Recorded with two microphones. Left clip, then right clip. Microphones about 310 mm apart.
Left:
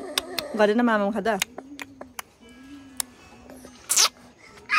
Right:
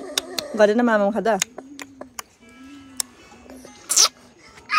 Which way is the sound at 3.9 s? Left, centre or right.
Centre.